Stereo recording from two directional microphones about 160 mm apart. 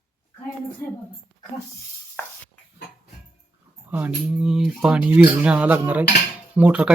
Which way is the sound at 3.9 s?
10° right (ahead or behind).